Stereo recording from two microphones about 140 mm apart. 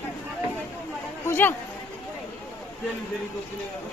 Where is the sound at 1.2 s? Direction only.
15° left (ahead or behind).